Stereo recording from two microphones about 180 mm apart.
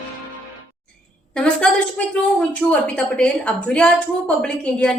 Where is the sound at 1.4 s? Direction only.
5° left (ahead or behind).